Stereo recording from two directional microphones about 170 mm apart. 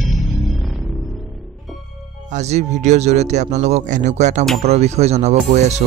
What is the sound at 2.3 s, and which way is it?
Speech, 40° right (ahead or behind).